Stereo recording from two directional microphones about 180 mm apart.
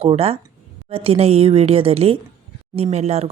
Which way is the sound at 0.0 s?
35° right (ahead or behind).